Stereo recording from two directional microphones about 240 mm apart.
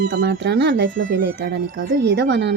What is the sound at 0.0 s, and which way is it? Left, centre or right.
Speech, right.